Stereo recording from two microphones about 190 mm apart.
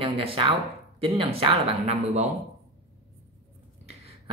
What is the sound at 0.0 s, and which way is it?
Speech, 30° right (ahead or behind).